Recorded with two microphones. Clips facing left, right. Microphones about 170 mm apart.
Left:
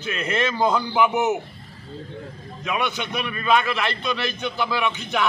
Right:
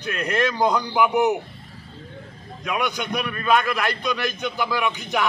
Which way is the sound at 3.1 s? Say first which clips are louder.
Even; 5° left (ahead or behind).